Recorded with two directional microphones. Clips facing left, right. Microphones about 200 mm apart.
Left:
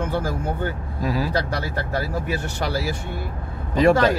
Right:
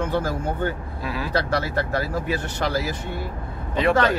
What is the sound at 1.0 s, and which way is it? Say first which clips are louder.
Speech: left 6 dB; 40° left (ahead or behind).